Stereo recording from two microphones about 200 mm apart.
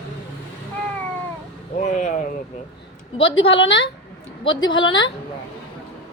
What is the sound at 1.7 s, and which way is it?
Speech, 35° left (ahead or behind).